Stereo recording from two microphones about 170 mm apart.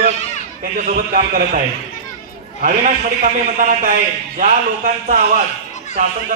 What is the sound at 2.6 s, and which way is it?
Speech, 50° right (ahead or behind).